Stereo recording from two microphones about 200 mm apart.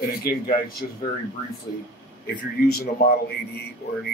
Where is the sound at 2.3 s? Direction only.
45° left (ahead or behind).